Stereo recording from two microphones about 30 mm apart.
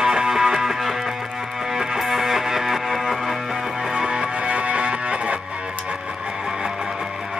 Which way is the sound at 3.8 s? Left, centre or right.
Right.